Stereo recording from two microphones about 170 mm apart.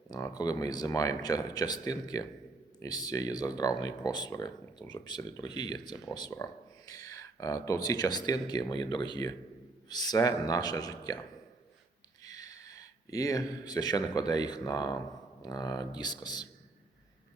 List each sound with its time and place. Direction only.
0.1 s speech: 20° left (ahead or behind)
12.2 s speech: 20° left (ahead or behind)